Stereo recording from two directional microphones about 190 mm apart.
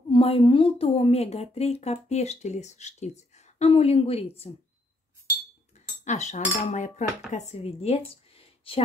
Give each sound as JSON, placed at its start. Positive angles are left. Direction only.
{"t": 0.1, "sound": "a woman's voice", "side_deg": 30}
{"t": 6.0, "sound": "a woman's voice", "side_deg": 40}